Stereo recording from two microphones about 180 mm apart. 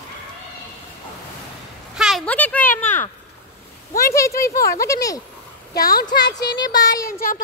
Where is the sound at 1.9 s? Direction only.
Centre (ahead or behind); by 5.2 s 20° left (ahead or behind).